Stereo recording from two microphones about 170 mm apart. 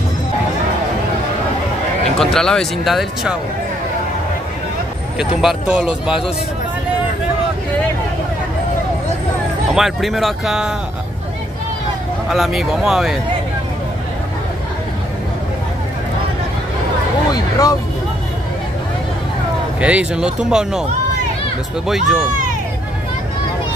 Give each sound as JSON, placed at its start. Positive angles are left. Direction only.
{"t": 2.1, "sound": "speech", "side_deg": 5}
{"t": 5.2, "sound": "speech", "side_deg": -5}
{"t": 9.8, "sound": "speech", "side_deg": 0}
{"t": 12.3, "sound": "speech", "side_deg": 0}
{"t": 17.3, "sound": "a sound", "side_deg": 20}
{"t": 19.8, "sound": "speech", "side_deg": -5}
{"t": 21.8, "sound": "speech", "side_deg": -5}